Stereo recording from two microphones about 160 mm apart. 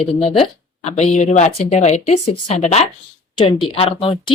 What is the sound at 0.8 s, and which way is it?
Speech, 45° left (ahead or behind).